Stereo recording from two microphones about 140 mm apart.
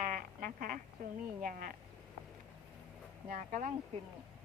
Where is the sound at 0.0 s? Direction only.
75° right (ahead or behind).